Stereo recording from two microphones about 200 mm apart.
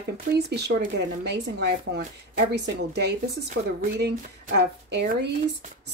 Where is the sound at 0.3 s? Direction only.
50° right (ahead or behind).